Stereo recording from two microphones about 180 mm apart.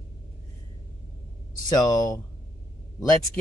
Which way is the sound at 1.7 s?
20° left (ahead or behind).